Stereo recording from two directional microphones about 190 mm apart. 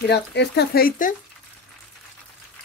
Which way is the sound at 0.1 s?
65° left (ahead or behind).